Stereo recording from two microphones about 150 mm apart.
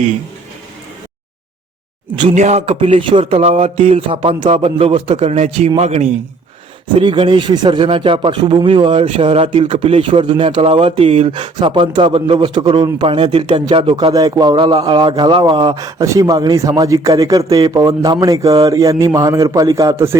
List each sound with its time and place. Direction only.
2.3 s speech: 50° right (ahead or behind)
7.0 s speech: 30° right (ahead or behind)
14.1 s speech: 25° right (ahead or behind)